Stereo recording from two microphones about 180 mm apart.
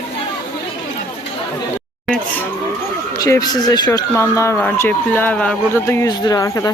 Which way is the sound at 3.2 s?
20° left (ahead or behind).